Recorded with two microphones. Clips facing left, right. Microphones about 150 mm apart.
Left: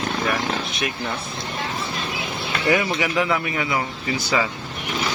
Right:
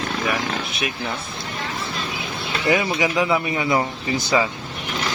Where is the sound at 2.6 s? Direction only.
20° right (ahead or behind).